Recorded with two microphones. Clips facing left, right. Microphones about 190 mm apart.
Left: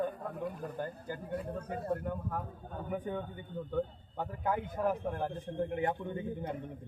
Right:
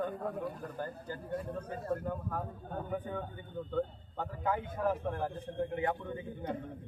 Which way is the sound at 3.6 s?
15° left (ahead or behind).